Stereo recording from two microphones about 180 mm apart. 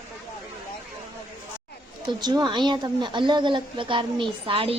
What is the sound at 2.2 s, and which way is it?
Speech, 25° right (ahead or behind).